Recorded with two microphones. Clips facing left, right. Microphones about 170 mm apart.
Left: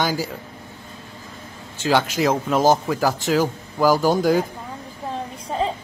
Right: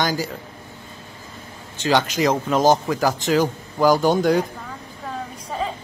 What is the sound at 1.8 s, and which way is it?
A man's voice, 5° left (ahead or behind).